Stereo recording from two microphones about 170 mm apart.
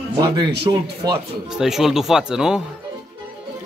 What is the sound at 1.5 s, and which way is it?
Speech, centre (ahead or behind).